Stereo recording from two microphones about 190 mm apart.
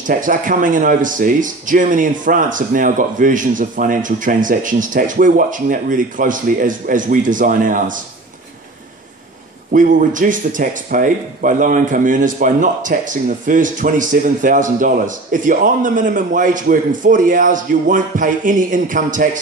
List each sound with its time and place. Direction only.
0.0 s speech: 45° right (ahead or behind)
9.7 s speech: 45° right (ahead or behind)